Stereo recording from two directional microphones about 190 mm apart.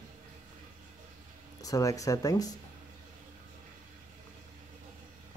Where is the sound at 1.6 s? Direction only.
15° left (ahead or behind).